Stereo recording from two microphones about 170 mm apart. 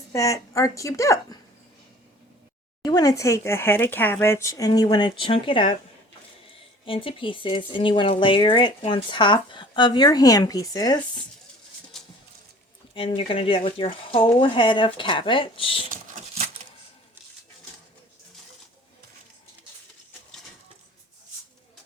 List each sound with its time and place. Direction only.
0.1 s speech: 20° left (ahead or behind)
2.8 s speech: 20° left (ahead or behind)
6.8 s speech: 30° left (ahead or behind)
12.9 s speech: 35° left (ahead or behind)